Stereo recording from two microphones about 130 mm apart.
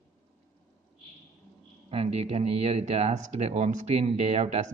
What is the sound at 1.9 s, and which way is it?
Speech, 55° right (ahead or behind).